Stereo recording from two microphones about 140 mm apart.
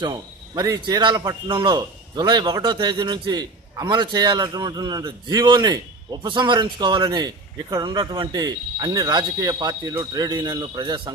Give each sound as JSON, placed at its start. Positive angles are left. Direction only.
{"t": 0.0, "sound": "a man's voice", "side_deg": -30}